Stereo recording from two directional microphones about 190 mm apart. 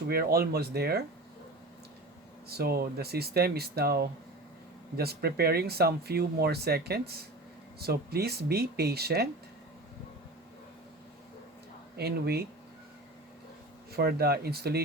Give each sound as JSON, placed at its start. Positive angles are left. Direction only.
{"t": 0.1, "sound": "speech", "side_deg": -55}
{"t": 2.5, "sound": "speech", "side_deg": -55}
{"t": 11.9, "sound": "speech", "side_deg": -55}
{"t": 13.9, "sound": "speech", "side_deg": -55}